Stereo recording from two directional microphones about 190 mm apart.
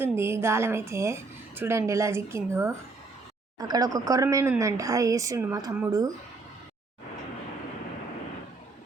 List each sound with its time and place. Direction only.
0.0 s a woman's voice: 15° right (ahead or behind)